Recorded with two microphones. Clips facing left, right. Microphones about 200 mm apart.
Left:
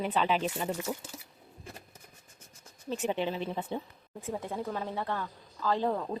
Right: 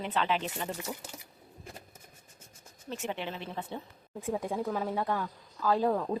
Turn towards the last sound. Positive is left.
turn(degrees=0)  # may be behind; listen again after turning